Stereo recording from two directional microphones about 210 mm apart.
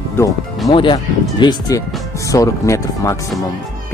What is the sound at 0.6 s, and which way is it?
Speech, 25° left (ahead or behind).